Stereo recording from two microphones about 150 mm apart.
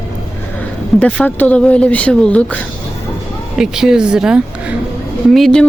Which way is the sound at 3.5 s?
5° right (ahead or behind).